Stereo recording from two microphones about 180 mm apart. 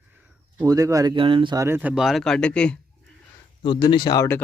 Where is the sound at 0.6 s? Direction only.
20° right (ahead or behind).